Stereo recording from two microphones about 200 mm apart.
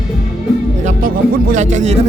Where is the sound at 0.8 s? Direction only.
40° right (ahead or behind).